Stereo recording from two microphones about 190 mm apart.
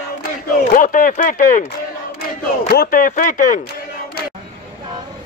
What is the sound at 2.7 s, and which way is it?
Speech, 50° left (ahead or behind).